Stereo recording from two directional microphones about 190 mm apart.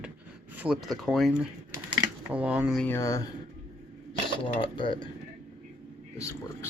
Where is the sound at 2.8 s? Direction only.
15° left (ahead or behind).